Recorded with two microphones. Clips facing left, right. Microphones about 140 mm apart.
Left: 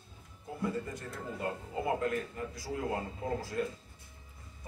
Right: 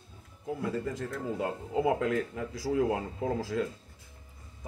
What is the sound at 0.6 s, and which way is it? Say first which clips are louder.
Speech: right 2 dB; 90° right.